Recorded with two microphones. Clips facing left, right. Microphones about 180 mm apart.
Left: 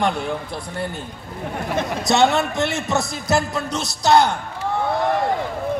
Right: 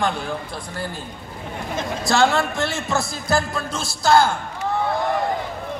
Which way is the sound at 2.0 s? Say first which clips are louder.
Left 1 dB; 20° left (ahead or behind).